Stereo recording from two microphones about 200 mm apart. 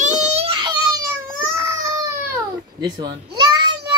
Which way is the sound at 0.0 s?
35° right (ahead or behind).